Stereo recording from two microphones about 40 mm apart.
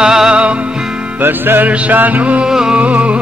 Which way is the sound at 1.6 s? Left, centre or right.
Right.